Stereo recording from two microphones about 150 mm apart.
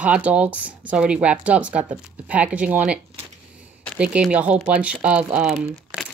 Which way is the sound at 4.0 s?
5° right (ahead or behind).